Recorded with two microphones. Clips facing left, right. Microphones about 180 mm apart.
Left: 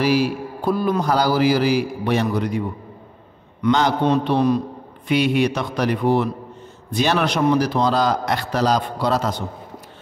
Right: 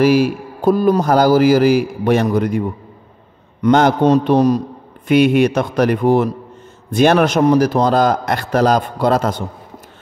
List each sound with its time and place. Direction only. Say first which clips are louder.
0.0 s a man's voice: right 6 dB; 45° right (ahead or behind)
3.6 s a man's voice: right 6 dB; 50° right (ahead or behind)